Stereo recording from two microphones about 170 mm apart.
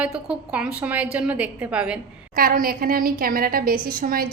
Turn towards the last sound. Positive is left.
turn(degrees=-60)  # may be behind; listen again after turning